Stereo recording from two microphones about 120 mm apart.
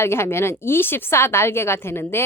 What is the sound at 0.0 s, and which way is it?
Speech, 20° left (ahead or behind).